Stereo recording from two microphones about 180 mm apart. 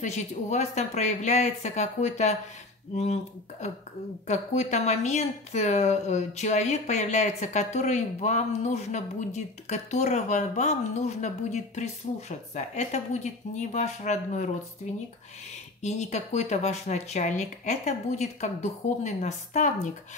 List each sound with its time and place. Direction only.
0.0 s a woman's voice: 40° left (ahead or behind)
4.3 s a woman's voice: 40° left (ahead or behind)
15.8 s a woman's voice: 40° left (ahead or behind)